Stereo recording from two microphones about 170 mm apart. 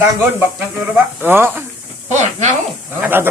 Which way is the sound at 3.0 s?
10° right (ahead or behind).